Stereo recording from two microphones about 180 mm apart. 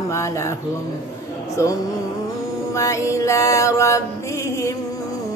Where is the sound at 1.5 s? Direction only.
15° left (ahead or behind).